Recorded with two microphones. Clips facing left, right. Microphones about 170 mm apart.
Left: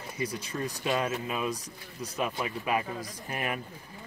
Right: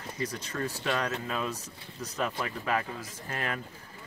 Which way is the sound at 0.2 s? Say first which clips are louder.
Left 1 dB; 10° left (ahead or behind).